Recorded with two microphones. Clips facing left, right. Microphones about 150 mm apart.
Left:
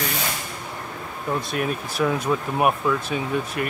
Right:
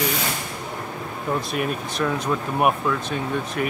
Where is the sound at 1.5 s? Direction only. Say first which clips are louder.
Even; centre (ahead or behind).